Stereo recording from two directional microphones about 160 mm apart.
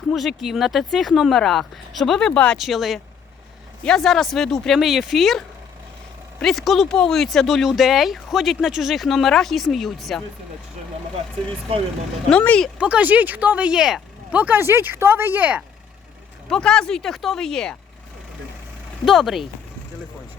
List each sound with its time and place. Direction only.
0.1 s speech: centre (ahead or behind)
6.4 s speech: centre (ahead or behind)
12.3 s speech: 5° left (ahead or behind)
12.8 s speech: 10° right (ahead or behind)
16.5 s speech: 5° left (ahead or behind)
19.0 s speech: centre (ahead or behind)